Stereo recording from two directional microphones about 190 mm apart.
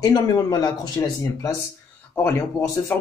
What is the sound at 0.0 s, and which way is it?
Speech, 20° left (ahead or behind).